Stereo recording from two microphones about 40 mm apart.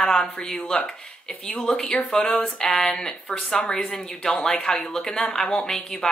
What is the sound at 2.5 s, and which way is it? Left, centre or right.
Speech, centre.